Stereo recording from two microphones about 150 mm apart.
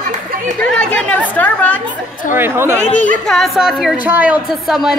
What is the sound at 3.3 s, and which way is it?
Speech, centre (ahead or behind).